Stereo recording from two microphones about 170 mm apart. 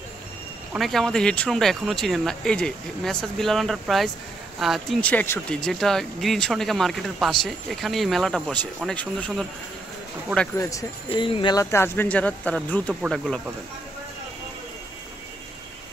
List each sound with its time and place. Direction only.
0.7 s speech: centre (ahead or behind)
10.6 s speech: 20° left (ahead or behind)
11.1 s speech: 30° left (ahead or behind); by 13.4 s 5° left (ahead or behind)